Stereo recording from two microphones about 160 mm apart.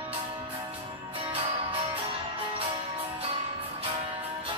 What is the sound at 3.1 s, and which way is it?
Music, 35° right (ahead or behind).